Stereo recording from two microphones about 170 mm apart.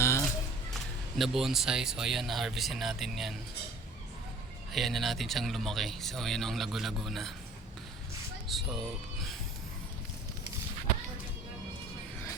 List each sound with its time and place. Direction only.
0.0 s a sound: 15° left (ahead or behind)
1.2 s speech: centre (ahead or behind)
4.7 s speech: centre (ahead or behind)
8.4 s speech: centre (ahead or behind)